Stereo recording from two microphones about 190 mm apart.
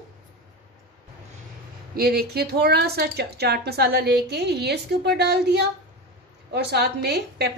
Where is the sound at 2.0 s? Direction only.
55° right (ahead or behind).